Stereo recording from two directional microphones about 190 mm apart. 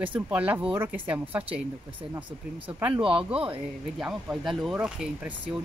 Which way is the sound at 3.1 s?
5° right (ahead or behind).